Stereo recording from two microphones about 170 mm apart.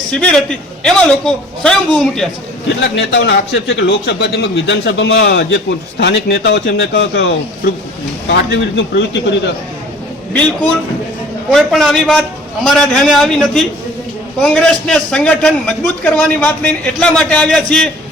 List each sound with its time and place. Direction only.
0.1 s a man's voice: 5° left (ahead or behind)
2.6 s a man's voice: 90° left
11.5 s a man's voice: centre (ahead or behind)